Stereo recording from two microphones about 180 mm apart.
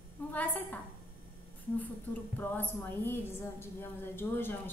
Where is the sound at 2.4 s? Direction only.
10° left (ahead or behind).